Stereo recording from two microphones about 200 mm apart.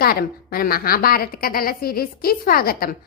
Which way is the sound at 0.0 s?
50° left (ahead or behind).